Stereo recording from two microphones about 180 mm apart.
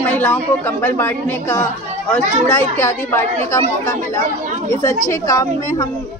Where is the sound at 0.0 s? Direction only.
10° left (ahead or behind).